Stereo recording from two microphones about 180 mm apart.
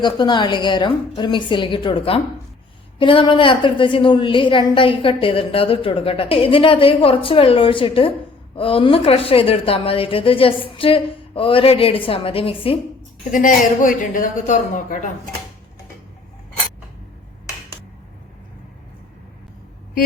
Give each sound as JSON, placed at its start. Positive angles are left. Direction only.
{"t": 0.0, "sound": "a woman's voice", "side_deg": 25}
{"t": 13.3, "sound": "speech", "side_deg": 50}